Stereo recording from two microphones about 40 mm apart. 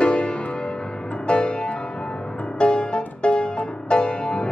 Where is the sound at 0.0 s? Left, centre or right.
Left.